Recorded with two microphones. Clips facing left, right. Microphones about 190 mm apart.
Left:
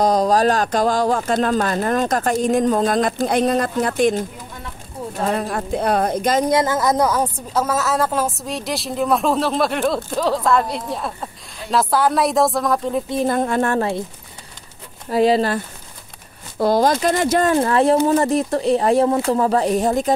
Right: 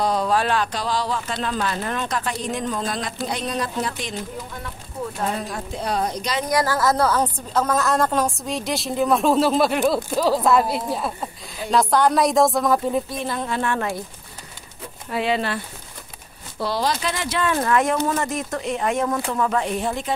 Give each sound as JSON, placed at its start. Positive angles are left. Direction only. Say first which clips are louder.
{"t": 0.0, "sound": "speech", "louder": "left 5 dB", "side_deg": 40}
{"t": 5.3, "sound": "speech", "louder": "left 7 dB", "side_deg": 60}
{"t": 6.5, "sound": "a woman's voice", "louder": "left 3 dB", "side_deg": 20}
{"t": 13.2, "sound": "speech", "louder": "left 7 dB", "side_deg": 50}
{"t": 15.0, "sound": "speech", "louder": "left 7 dB", "side_deg": 35}
{"t": 17.6, "sound": "speech", "louder": "left 5 dB", "side_deg": 30}